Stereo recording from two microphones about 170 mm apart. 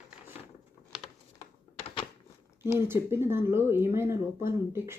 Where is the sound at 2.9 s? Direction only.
15° right (ahead or behind).